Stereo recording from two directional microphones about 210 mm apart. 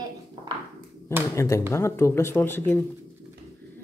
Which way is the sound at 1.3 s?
15° left (ahead or behind).